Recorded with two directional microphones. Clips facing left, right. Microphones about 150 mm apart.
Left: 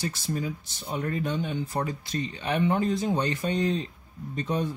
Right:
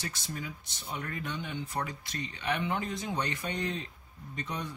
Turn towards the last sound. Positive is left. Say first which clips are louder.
# left 9 dB
turn(degrees=30)  # may be behind; listen again after turning